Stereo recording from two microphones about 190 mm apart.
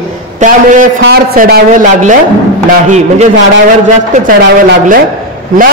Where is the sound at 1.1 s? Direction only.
55° right (ahead or behind).